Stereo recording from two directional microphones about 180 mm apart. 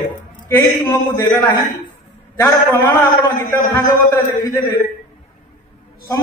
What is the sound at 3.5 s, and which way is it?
A man's voice, 15° left (ahead or behind).